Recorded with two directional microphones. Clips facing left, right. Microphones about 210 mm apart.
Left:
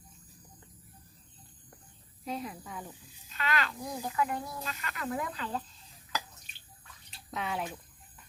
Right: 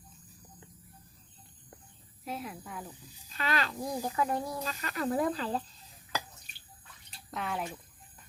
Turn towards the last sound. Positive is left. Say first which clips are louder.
# even
turn(degrees=0)  # may be behind; listen again after turning